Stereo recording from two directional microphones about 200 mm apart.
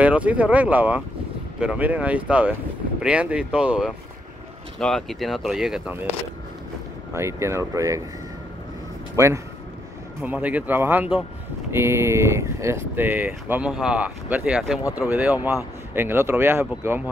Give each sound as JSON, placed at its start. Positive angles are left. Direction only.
{"t": 0.0, "sound": "speech", "side_deg": -5}
{"t": 7.2, "sound": "speech", "side_deg": -15}
{"t": 9.1, "sound": "speech", "side_deg": -15}
{"t": 14.8, "sound": "speech", "side_deg": 15}
{"t": 15.0, "sound": "speech", "side_deg": -10}